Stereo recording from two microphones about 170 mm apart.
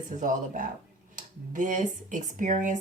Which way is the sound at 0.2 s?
50° right (ahead or behind).